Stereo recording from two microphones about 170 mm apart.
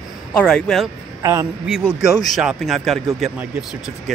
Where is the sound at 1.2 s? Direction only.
15° right (ahead or behind).